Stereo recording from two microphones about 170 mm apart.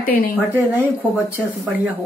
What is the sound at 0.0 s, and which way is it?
Speech, 55° left (ahead or behind).